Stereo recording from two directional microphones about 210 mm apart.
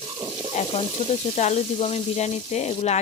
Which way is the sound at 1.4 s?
30° left (ahead or behind).